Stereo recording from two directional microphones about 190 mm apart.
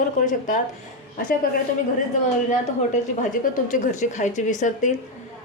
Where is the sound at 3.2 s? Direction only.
40° left (ahead or behind).